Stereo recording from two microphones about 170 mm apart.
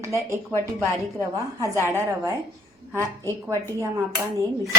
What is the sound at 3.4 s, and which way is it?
Speech, 20° right (ahead or behind).